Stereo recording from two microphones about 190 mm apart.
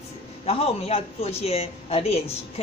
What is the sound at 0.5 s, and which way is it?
Speech, 30° left (ahead or behind).